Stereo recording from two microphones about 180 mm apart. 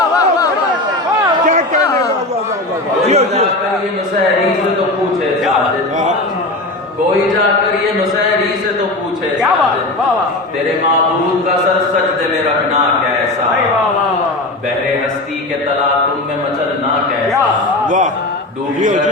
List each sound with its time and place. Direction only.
1.5 s chatter: 40° right (ahead or behind)
3.1 s chatter: 35° right (ahead or behind)
17.8 s a man's voice: 45° right (ahead or behind)